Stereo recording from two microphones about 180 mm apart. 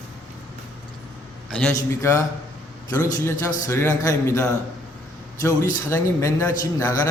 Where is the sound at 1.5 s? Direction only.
5° left (ahead or behind).